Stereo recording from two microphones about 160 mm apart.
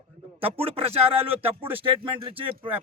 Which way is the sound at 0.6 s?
35° right (ahead or behind).